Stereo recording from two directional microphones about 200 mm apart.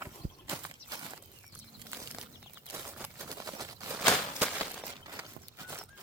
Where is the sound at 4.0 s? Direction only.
Centre (ahead or behind).